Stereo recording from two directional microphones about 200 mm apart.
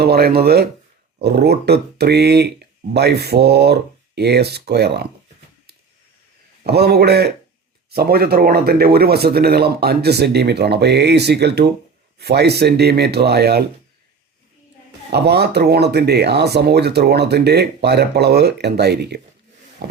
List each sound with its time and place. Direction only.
0.0 s speech: 50° right (ahead or behind)
6.7 s speech: 55° right (ahead or behind)
15.1 s speech: 55° right (ahead or behind)